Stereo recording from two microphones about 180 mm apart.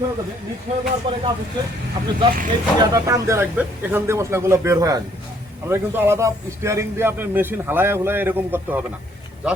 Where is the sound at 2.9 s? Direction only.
20° right (ahead or behind).